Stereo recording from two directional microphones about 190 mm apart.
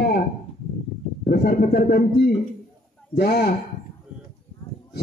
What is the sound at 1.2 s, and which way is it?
A man's voice, 55° left (ahead or behind).